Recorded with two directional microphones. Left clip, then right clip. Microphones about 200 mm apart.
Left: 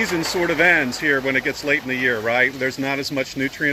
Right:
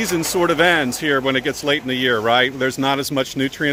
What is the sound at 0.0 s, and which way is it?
Speech, 25° right (ahead or behind).